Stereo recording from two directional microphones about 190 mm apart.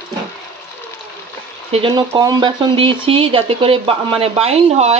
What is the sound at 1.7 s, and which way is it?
Speech, 30° right (ahead or behind).